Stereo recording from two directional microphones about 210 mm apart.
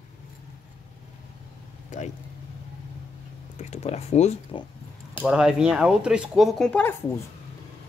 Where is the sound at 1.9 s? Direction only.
35° left (ahead or behind).